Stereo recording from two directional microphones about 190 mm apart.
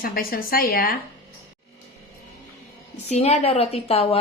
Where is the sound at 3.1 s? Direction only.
35° left (ahead or behind).